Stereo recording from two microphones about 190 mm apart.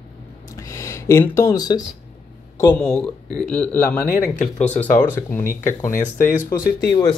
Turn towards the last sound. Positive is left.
turn(degrees=45)  # may be behind; listen again after turning